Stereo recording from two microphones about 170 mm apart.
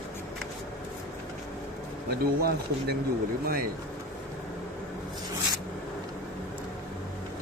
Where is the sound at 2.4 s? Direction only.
65° right (ahead or behind).